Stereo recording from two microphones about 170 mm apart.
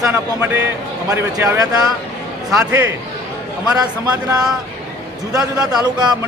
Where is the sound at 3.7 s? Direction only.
20° right (ahead or behind).